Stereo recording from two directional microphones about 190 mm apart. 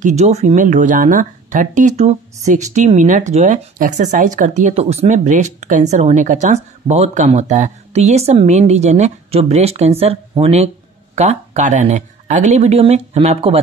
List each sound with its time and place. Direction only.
0.0 s speech: 35° right (ahead or behind)